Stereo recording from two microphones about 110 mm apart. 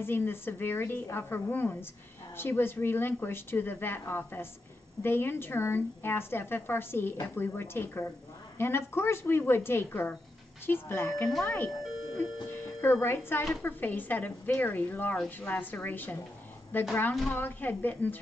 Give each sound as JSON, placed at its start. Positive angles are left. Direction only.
{"t": 0.0, "sound": "a woman's voice", "side_deg": 20}